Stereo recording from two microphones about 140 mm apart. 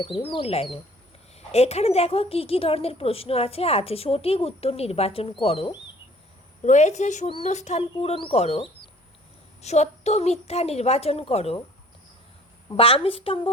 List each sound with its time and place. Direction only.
0.0 s a woman's voice: 35° left (ahead or behind)
6.6 s a woman's voice: 55° left (ahead or behind)
12.7 s a woman's voice: 40° left (ahead or behind)